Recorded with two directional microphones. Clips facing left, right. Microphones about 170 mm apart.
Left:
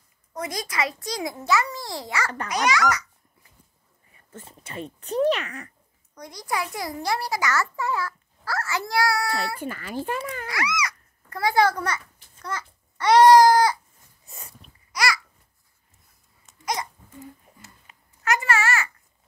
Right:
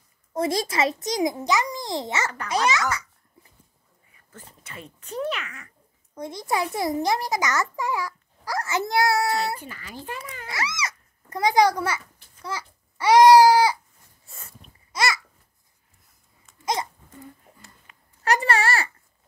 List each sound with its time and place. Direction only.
0.3 s a child's voice: 30° right (ahead or behind)
4.3 s speech: 25° left (ahead or behind)
6.1 s a child's voice: 25° right (ahead or behind)
9.6 s a child's voice: 55° left (ahead or behind)
10.4 s a child's voice: 25° right (ahead or behind); by 13.7 s 10° right (ahead or behind)
14.2 s a sound: 20° left (ahead or behind)
14.9 s babbling: 25° right (ahead or behind)
16.5 s babbling: 20° left (ahead or behind)
17.9 s a sound: 20° left (ahead or behind)
18.2 s a child's voice: 35° right (ahead or behind)